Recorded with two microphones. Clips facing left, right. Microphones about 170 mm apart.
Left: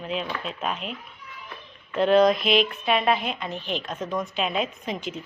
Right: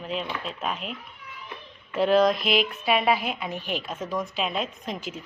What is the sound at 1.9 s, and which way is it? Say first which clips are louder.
Speech: left 2 dB; 5° right (ahead or behind).